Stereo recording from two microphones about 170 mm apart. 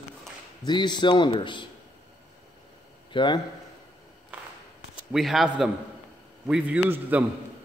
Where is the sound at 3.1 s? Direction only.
30° left (ahead or behind).